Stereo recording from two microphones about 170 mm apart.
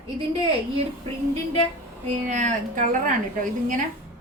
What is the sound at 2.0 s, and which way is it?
A woman's voice, 45° right (ahead or behind).